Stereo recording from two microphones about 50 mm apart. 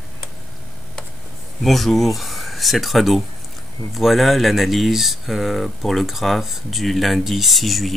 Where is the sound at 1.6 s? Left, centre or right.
Centre.